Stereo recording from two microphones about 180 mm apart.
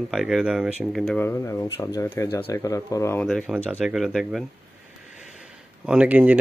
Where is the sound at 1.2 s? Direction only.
15° left (ahead or behind).